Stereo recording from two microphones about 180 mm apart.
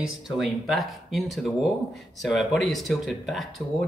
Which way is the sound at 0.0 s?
Centre (ahead or behind).